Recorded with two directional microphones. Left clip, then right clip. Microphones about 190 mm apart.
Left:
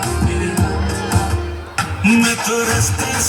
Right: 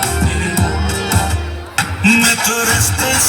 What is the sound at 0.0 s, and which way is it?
Music, 25° right (ahead or behind).